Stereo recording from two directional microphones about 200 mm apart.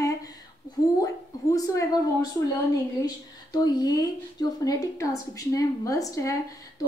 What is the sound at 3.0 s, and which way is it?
A woman's voice, 20° left (ahead or behind).